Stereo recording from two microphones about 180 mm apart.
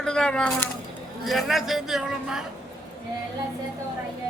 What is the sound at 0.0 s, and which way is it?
A woman's voice, 5° left (ahead or behind).